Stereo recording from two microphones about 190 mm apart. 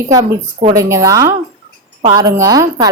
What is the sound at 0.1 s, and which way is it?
A woman's voice, 20° right (ahead or behind).